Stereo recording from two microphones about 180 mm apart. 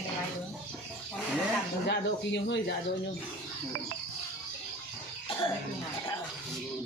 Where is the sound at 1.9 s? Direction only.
70° left (ahead or behind).